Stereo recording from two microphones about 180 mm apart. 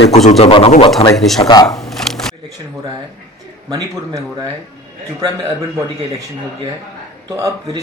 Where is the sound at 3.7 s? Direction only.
20° right (ahead or behind).